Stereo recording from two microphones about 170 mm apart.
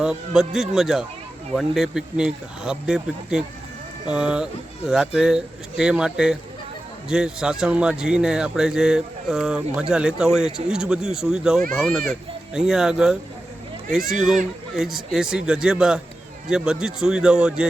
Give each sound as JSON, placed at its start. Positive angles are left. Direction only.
{"t": 0.0, "sound": "speech", "side_deg": -5}